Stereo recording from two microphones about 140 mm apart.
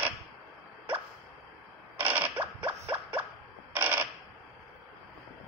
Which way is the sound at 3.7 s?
15° right (ahead or behind).